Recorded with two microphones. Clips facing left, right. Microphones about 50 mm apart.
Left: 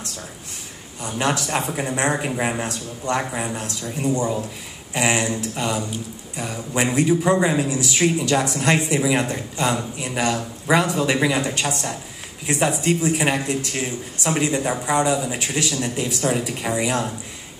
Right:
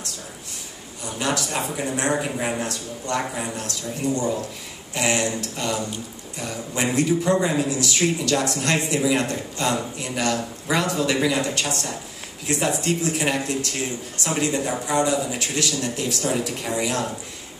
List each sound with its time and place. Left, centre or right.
1.0 s a man's voice: left